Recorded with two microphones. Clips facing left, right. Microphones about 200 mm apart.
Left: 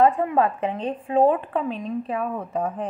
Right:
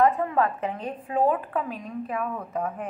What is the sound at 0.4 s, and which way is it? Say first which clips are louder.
Speech: left 3 dB; 15° left (ahead or behind).